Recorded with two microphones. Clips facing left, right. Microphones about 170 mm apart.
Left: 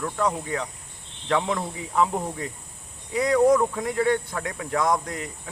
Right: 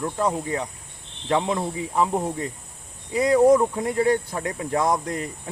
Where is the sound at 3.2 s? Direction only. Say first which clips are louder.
Right 2 dB; 25° right (ahead or behind).